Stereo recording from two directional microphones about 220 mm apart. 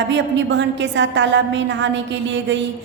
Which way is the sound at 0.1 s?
55° right (ahead or behind).